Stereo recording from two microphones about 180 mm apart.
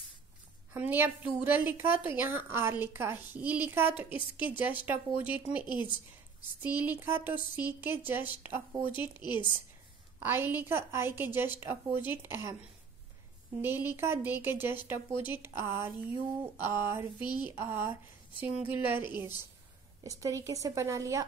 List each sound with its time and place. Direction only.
0.7 s a woman's voice: 10° right (ahead or behind)
9.2 s a woman's voice: 25° left (ahead or behind)
10.2 s a woman's voice: 10° right (ahead or behind)
13.6 s a woman's voice: 10° right (ahead or behind)
18.9 s a woman's voice: 25° left (ahead or behind)
20.0 s a woman's voice: 15° right (ahead or behind)